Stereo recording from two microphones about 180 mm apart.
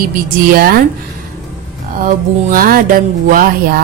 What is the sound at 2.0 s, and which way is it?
Speech, 50° right (ahead or behind).